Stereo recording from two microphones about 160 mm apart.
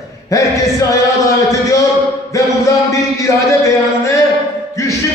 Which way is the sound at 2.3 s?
20° left (ahead or behind).